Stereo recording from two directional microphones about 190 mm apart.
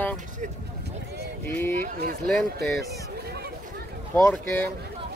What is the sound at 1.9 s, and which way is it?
Speech, 50° right (ahead or behind).